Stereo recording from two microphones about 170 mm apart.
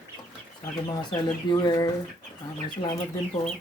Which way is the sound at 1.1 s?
25° left (ahead or behind).